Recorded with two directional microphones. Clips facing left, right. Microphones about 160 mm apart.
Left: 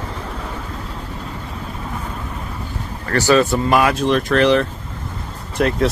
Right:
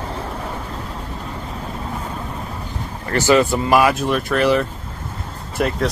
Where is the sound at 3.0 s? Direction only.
15° right (ahead or behind).